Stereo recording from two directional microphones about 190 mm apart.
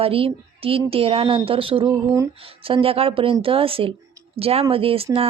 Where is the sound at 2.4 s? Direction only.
30° right (ahead or behind).